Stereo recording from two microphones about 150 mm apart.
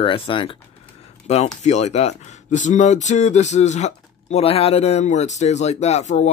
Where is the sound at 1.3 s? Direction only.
50° left (ahead or behind).